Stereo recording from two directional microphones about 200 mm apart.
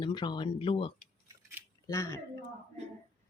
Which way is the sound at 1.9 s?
15° left (ahead or behind).